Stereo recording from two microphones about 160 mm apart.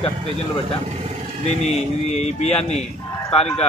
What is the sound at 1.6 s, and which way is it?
Speech, 40° left (ahead or behind).